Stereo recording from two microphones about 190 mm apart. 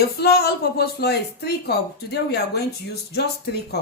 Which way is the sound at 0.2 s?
60° left (ahead or behind).